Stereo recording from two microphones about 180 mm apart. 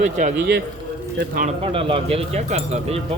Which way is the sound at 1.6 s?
30° right (ahead or behind).